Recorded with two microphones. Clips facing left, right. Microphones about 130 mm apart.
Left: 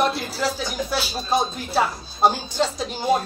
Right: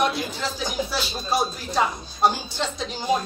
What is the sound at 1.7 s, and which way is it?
Speech, 5° left (ahead or behind).